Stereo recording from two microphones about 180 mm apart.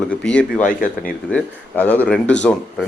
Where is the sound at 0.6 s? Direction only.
50° left (ahead or behind).